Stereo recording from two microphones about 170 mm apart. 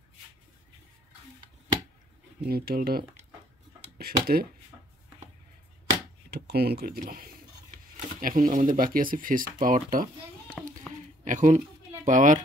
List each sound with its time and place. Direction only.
2.4 s speech: 60° right (ahead or behind)
6.3 s a child's voice: 65° right (ahead or behind); by 10.0 s 50° right (ahead or behind)
10.6 s a sound: centre (ahead or behind)
11.2 s speech: 45° right (ahead or behind)